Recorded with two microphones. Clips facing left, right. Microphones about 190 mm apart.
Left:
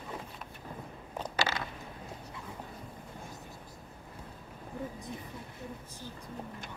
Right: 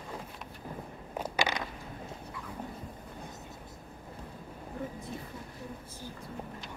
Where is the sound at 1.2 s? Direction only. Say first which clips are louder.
Right 2 dB; 10° right (ahead or behind).